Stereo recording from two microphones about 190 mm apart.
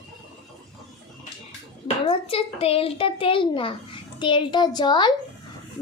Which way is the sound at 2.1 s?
30° left (ahead or behind).